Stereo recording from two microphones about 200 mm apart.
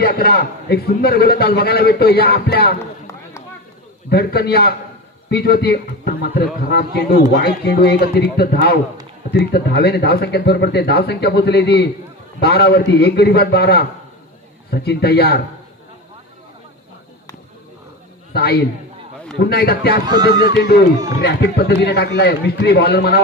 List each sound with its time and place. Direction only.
0.0 s a man's voice: 50° left (ahead or behind)
4.1 s a man's voice: 50° left (ahead or behind)
18.3 s a man's voice: 50° left (ahead or behind)
20.1 s speech: 20° right (ahead or behind)
21.2 s speech: 55° left (ahead or behind)